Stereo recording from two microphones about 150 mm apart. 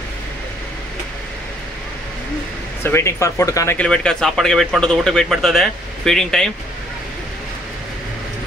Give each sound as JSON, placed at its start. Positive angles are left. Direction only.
{"t": 2.8, "sound": "speech", "side_deg": 15}
{"t": 3.7, "sound": "speech", "side_deg": 5}